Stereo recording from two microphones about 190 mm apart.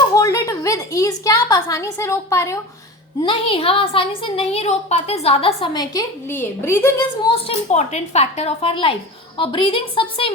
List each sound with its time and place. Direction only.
0.1 s a woman's voice: 15° left (ahead or behind)
3.2 s a woman's voice: 25° left (ahead or behind)
6.0 s a woman's voice: 10° left (ahead or behind)
7.4 s a woman's voice: 35° left (ahead or behind)